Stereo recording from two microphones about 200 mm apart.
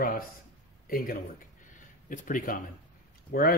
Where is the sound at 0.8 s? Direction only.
45° left (ahead or behind).